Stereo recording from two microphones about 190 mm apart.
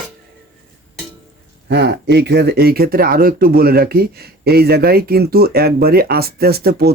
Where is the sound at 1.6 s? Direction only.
60° right (ahead or behind).